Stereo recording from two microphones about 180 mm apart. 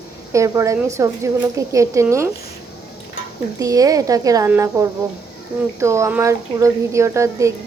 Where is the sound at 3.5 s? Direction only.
20° right (ahead or behind).